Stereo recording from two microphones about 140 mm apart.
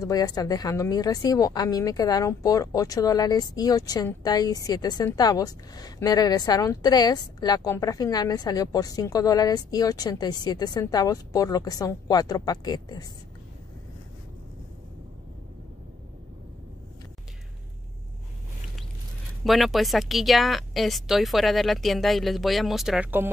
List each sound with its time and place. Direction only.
0.0 s a woman's voice: 25° left (ahead or behind)
19.4 s speech: centre (ahead or behind)